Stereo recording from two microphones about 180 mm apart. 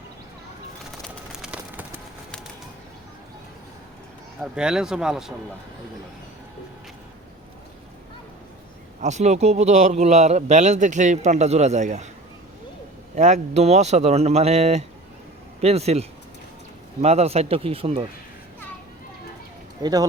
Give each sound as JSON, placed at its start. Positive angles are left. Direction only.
{"t": 1.4, "sound": "bird", "side_deg": -5}
{"t": 4.4, "sound": "speech", "side_deg": -5}
{"t": 9.0, "sound": "a man's voice", "side_deg": -40}
{"t": 13.1, "sound": "a man's voice", "side_deg": -40}
{"t": 19.8, "sound": "speech", "side_deg": -20}